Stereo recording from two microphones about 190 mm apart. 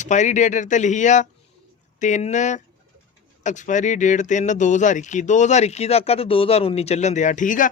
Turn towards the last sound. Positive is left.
turn(degrees=45)  # may be behind; listen again after turning